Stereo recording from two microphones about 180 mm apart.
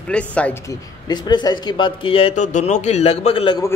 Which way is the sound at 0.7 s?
25° left (ahead or behind).